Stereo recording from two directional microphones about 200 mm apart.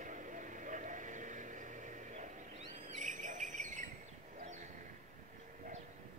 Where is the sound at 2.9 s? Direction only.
40° right (ahead or behind).